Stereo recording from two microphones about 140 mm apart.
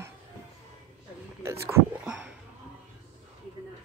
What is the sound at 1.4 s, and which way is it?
Whispering, 20° right (ahead or behind).